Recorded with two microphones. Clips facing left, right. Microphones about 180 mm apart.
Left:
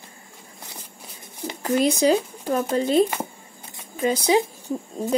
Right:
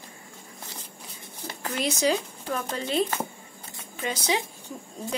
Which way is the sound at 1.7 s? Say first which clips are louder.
Left 7 dB; 40° left (ahead or behind).